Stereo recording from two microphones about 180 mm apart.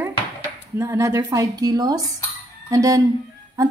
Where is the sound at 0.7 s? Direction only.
15° right (ahead or behind).